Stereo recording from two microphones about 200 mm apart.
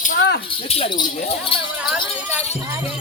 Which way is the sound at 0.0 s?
40° left (ahead or behind).